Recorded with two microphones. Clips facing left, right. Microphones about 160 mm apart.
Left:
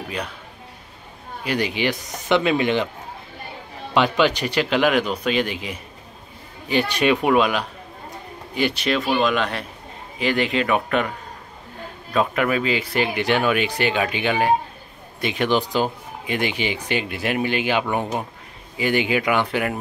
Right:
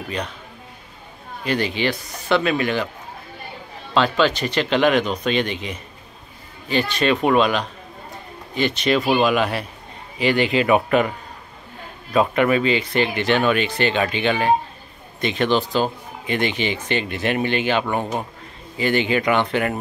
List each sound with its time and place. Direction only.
1.4 s speech: 10° left (ahead or behind)
3.9 s speech: 15° left (ahead or behind)
9.2 s a man's voice: 5° right (ahead or behind)